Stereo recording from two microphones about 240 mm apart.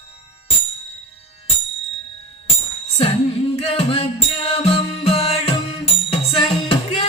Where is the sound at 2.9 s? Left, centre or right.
Left.